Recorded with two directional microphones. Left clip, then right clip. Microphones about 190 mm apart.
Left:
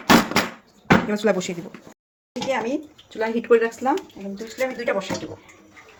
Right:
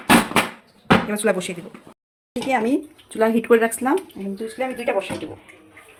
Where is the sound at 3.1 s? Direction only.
70° right (ahead or behind).